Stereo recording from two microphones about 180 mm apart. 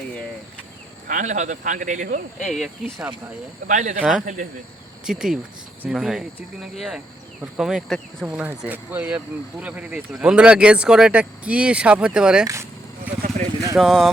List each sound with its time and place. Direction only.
1.0 s speech: 45° right (ahead or behind)
2.4 s speech: centre (ahead or behind)
3.7 s speech: 45° right (ahead or behind)
5.0 s speech: 5° right (ahead or behind)
13.2 s vehicle: 40° right (ahead or behind)
13.7 s speech: centre (ahead or behind)